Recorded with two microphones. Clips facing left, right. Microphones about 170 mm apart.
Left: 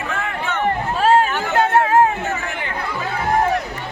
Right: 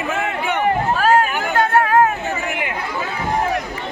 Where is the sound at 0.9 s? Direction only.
25° left (ahead or behind).